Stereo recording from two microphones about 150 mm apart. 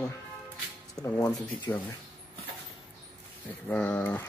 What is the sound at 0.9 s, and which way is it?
Speech, 25° left (ahead or behind).